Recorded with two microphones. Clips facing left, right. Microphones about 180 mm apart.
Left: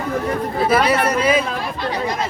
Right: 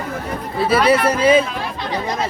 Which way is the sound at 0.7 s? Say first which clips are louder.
Right 3 dB; 30° right (ahead or behind).